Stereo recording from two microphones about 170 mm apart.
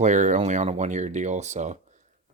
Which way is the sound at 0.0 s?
45° right (ahead or behind).